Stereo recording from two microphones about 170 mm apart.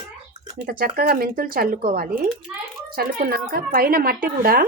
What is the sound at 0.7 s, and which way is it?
Speech, 60° right (ahead or behind).